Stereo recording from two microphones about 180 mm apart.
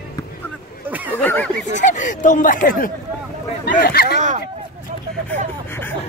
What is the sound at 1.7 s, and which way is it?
Speech, 40° left (ahead or behind).